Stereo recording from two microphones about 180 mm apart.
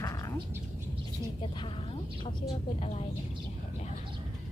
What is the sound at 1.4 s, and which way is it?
Speech, 30° left (ahead or behind).